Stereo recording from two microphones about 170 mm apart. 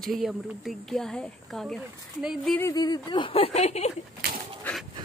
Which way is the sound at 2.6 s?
20° left (ahead or behind).